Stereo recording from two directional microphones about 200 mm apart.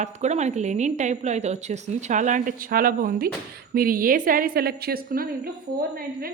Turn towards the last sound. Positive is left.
turn(degrees=-50)  # may be behind; listen again after turning